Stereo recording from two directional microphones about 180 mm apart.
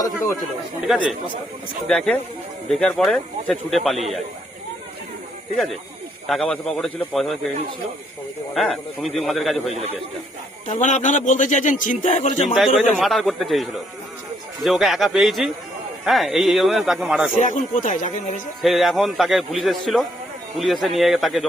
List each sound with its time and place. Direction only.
0.9 s a man's voice: centre (ahead or behind)
6.2 s a man's voice: centre (ahead or behind)
8.5 s a man's voice: centre (ahead or behind)
10.7 s a man's voice: 40° left (ahead or behind)
12.5 s a man's voice: centre (ahead or behind)
17.4 s a man's voice: 45° left (ahead or behind)
18.6 s a man's voice: centre (ahead or behind)